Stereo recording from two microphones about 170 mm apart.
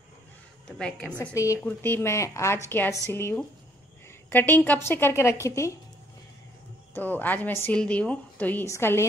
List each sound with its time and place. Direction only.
0.7 s a woman's voice: 5° left (ahead or behind)
1.2 s a woman's voice: 20° left (ahead or behind)
6.9 s a woman's voice: 10° left (ahead or behind)